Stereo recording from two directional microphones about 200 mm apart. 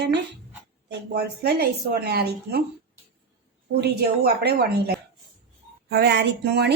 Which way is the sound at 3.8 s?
55° right (ahead or behind).